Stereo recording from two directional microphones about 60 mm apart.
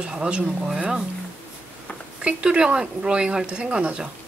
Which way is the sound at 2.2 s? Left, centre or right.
Centre.